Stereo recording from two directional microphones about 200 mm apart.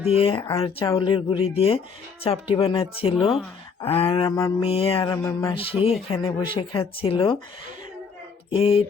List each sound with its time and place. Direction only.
0.1 s speech: 25° left (ahead or behind)
4.7 s speech: 30° left (ahead or behind)
5.1 s music: 15° left (ahead or behind)
5.5 s speech: 30° left (ahead or behind)
8.4 s speech: 30° left (ahead or behind)